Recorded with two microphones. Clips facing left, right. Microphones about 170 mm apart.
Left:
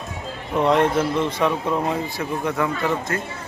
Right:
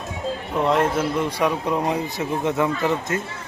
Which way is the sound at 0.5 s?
Centre (ahead or behind).